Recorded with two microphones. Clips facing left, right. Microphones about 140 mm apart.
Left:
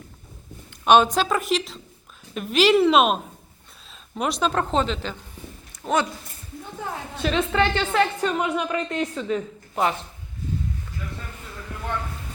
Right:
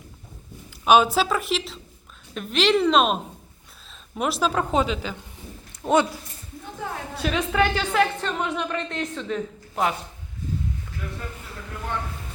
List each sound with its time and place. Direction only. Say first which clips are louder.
0.9 s speech: left 1 dB; 5° right (ahead or behind)
4.2 s speech: even; 5° right (ahead or behind)
5.8 s speech: right 3 dB; 20° right (ahead or behind)
7.2 s speech: left 1 dB; 5° right (ahead or behind)
8.2 s a woman's voice: left 3 dB; 10° left (ahead or behind)